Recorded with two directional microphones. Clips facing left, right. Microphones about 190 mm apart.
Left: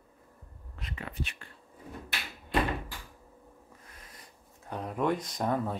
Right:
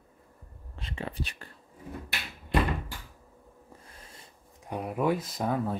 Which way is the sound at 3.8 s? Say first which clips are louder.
Right 2 dB; 30° right (ahead or behind).